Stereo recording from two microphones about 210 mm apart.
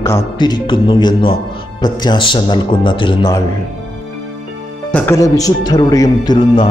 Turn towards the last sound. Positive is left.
turn(degrees=25)  # may be behind; listen again after turning